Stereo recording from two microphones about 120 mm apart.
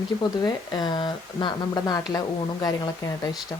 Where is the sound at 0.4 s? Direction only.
35° left (ahead or behind).